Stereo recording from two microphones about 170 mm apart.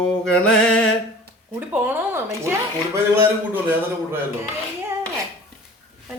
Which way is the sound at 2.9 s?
10° right (ahead or behind).